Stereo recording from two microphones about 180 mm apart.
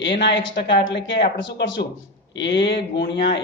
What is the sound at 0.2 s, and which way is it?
Speech, 80° left.